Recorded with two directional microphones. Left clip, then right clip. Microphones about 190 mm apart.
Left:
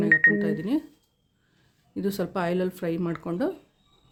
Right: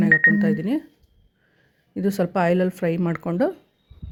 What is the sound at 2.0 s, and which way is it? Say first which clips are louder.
Speech: right 6 dB; 20° right (ahead or behind).